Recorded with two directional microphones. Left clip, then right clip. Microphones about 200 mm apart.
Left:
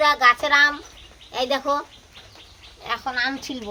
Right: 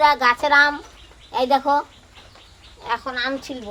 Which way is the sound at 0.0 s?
5° right (ahead or behind).